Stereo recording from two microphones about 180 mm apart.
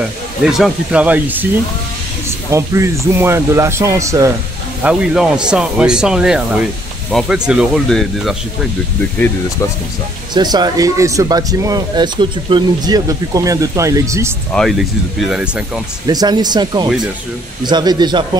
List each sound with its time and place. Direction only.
0.4 s speech: centre (ahead or behind)
2.5 s speech: 15° right (ahead or behind)
4.8 s speech: 5° right (ahead or behind)
10.3 s speech: 25° right (ahead or behind)
14.5 s speech: centre (ahead or behind)
16.1 s speech: 20° right (ahead or behind)